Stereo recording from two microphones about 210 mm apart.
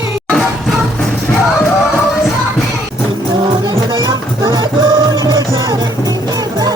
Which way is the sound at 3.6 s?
20° right (ahead or behind).